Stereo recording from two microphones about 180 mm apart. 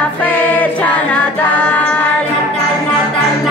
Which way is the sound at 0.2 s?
10° left (ahead or behind).